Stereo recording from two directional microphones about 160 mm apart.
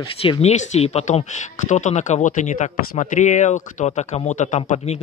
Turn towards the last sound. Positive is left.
turn(degrees=45)  # may be behind; listen again after turning